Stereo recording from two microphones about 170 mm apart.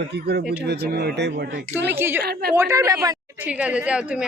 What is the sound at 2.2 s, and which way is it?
Speech, 65° right (ahead or behind).